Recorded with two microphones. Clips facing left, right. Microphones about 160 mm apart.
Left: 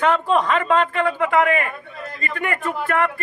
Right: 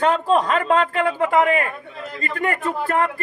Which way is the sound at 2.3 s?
35° right (ahead or behind).